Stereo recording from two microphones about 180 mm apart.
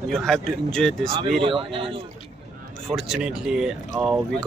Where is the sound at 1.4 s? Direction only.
30° right (ahead or behind).